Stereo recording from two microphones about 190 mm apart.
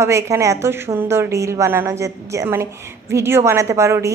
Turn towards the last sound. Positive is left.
turn(degrees=-15)  # may be behind; listen again after turning